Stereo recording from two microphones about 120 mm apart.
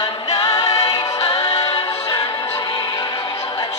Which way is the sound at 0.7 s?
60° left (ahead or behind).